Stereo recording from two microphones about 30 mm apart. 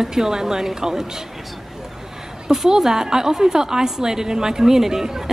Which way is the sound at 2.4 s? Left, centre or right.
Centre.